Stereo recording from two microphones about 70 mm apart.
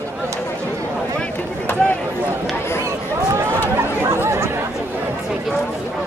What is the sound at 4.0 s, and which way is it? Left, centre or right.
Chatter, right.